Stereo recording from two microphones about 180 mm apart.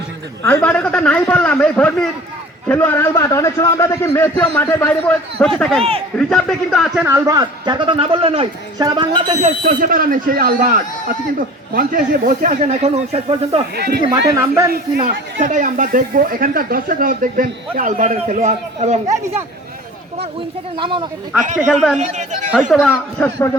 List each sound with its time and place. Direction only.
0.4 s a man's voice: 10° left (ahead or behind)
7.1 s a woman's voice: 20° right (ahead or behind)
9.4 s speech: 50° right (ahead or behind)
13.7 s speech: 65° right (ahead or behind)
14.3 s speech: 15° right (ahead or behind)
14.7 s speech: 55° right (ahead or behind)
19.0 s speech: 15° right (ahead or behind)
20.7 s a woman's voice: 30° right (ahead or behind)
21.4 s speech: 45° right (ahead or behind)
21.7 s a man's voice: centre (ahead or behind)
21.9 s a man's voice: 40° right (ahead or behind)
22.9 s a man's voice: 15° left (ahead or behind)